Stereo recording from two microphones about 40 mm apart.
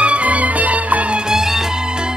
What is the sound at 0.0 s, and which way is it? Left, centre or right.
Music, right.